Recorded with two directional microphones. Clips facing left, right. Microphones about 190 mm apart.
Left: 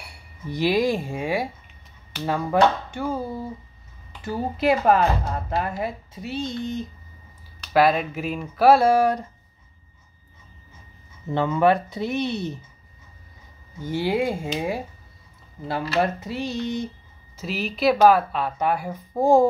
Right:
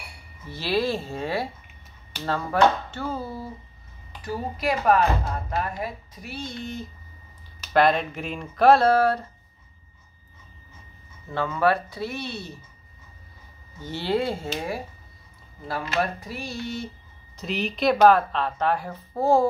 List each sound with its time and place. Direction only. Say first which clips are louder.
0.5 s a woman's voice: left 4 dB; 15° left (ahead or behind)
7.7 s speech: left 1 dB; 5° left (ahead or behind)
11.2 s speech: left 4 dB; 20° left (ahead or behind)
13.8 s a woman's voice: left 2 dB; 10° left (ahead or behind)
16.0 s speech: left 5 dB; 20° left (ahead or behind)
17.4 s a woman's voice: left 1 dB; 5° left (ahead or behind)